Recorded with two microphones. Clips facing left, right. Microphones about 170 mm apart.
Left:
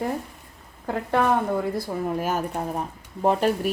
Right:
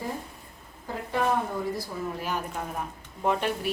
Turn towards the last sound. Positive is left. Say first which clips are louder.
# left 5 dB
turn(degrees=40)  # may be behind; listen again after turning